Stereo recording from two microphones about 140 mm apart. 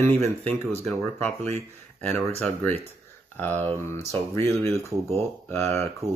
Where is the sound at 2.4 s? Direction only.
10° left (ahead or behind).